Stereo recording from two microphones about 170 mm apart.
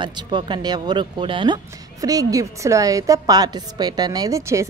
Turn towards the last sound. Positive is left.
turn(degrees=-15)  # may be behind; listen again after turning